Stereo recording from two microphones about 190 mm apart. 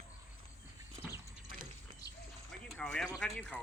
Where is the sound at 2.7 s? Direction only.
5° left (ahead or behind).